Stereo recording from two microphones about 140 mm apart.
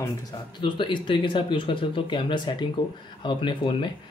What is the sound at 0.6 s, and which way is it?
Speech, 35° left (ahead or behind).